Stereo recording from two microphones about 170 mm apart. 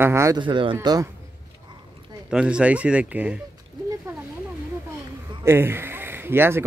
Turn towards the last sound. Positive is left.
turn(degrees=-15)  # may be behind; listen again after turning